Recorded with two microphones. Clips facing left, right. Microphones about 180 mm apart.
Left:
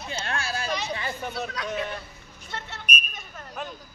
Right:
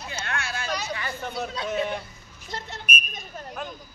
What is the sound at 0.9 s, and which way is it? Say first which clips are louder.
Chatter: left 1 dB; 20° left (ahead or behind).